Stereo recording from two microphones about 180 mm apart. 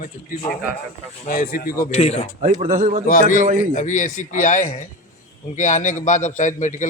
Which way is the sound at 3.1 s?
50° left (ahead or behind).